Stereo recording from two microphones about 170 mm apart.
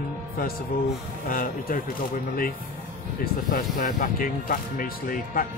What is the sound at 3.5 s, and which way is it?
Speech, 55° left (ahead or behind).